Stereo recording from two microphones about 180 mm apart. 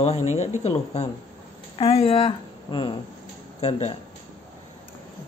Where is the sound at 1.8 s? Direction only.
35° left (ahead or behind).